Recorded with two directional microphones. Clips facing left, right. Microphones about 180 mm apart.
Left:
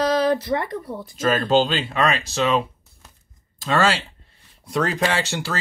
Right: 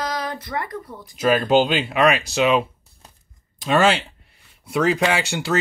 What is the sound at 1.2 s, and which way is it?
Speech, 10° right (ahead or behind).